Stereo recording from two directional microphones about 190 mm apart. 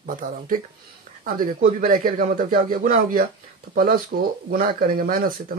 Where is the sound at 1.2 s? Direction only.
45° right (ahead or behind).